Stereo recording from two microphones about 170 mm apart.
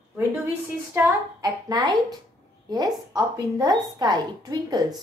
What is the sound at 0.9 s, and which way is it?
A woman's voice, 20° right (ahead or behind).